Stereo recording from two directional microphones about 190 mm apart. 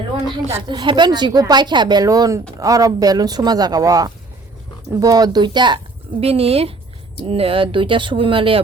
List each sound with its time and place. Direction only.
0.7 s speech: 25° right (ahead or behind)